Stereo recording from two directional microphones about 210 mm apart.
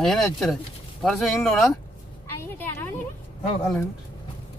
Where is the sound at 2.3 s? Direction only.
10° left (ahead or behind).